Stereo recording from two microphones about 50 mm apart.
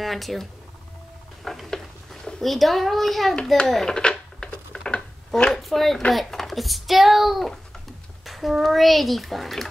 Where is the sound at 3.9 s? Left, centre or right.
Centre.